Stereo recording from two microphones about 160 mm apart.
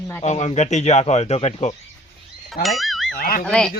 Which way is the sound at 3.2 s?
60° left (ahead or behind).